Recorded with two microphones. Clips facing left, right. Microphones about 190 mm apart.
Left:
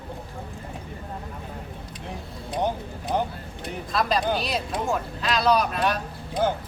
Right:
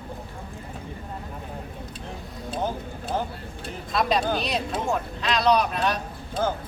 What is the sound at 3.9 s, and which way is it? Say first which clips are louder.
Speech: right 1 dB; centre (ahead or behind).